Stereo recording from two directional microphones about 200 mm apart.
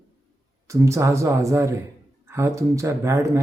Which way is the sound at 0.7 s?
15° right (ahead or behind).